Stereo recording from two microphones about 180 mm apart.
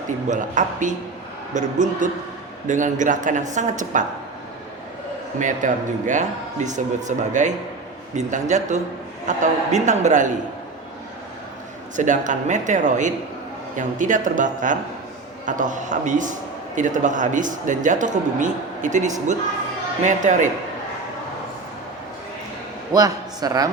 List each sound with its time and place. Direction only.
0.3 s a man's voice: 45° right (ahead or behind)
5.4 s a man's voice: 45° right (ahead or behind)
11.9 s a man's voice: 45° right (ahead or behind)
22.9 s speech: 20° right (ahead or behind)